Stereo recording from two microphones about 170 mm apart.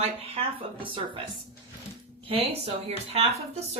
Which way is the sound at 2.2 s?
35° right (ahead or behind).